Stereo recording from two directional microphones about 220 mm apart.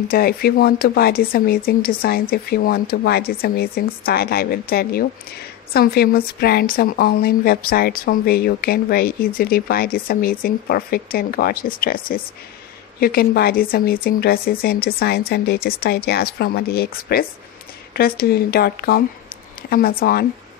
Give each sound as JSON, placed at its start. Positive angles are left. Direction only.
{"t": 0.1, "sound": "a woman's voice", "side_deg": 45}